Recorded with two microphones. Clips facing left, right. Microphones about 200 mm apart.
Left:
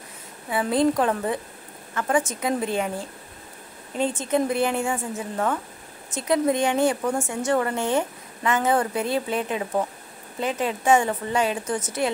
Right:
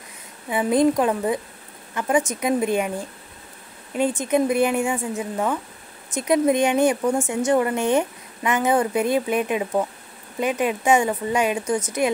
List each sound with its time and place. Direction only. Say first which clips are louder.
0.5 s speech: right 3 dB; 15° right (ahead or behind)
4.2 s speech: right 3 dB; 15° right (ahead or behind)